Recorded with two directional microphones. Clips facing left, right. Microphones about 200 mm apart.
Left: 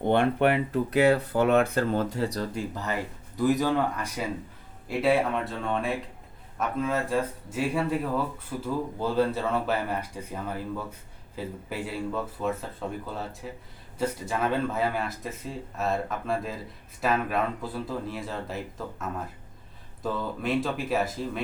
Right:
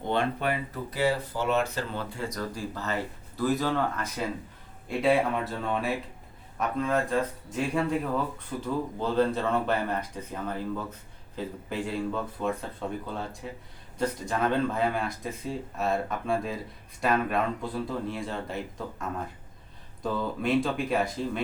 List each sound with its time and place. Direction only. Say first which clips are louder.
0.0 s speech: left 6 dB; 55° left (ahead or behind); by 21.4 s 5° left (ahead or behind)